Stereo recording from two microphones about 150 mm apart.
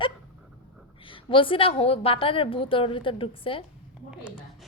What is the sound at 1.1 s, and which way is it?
A woman's voice, 35° left (ahead or behind).